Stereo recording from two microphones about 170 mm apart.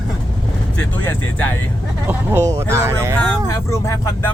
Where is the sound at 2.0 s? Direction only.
10° right (ahead or behind).